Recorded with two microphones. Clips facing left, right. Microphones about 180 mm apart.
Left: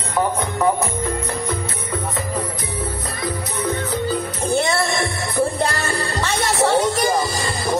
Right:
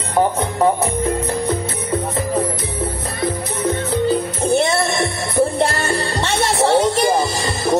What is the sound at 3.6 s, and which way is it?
Music, 25° right (ahead or behind).